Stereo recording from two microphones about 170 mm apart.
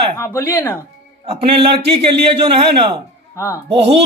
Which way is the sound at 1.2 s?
35° right (ahead or behind).